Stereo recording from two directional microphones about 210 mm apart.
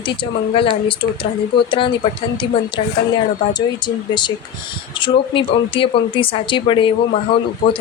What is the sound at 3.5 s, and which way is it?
Speech, 20° left (ahead or behind).